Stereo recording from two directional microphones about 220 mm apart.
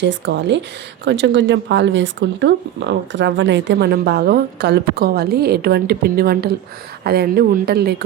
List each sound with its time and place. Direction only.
0.0 s speech: 55° right (ahead or behind)